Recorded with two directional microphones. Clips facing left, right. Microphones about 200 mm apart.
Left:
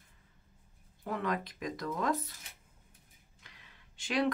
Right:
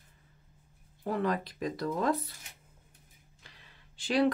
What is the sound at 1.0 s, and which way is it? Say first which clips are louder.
Speech: right 4 dB; 35° right (ahead or behind).